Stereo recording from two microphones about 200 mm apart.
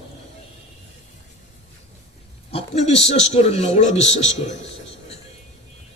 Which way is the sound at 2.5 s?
30° left (ahead or behind).